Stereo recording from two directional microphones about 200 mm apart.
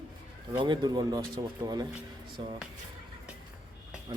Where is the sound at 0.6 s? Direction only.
20° right (ahead or behind).